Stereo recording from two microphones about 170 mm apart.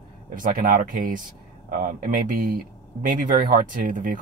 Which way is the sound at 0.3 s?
55° right (ahead or behind).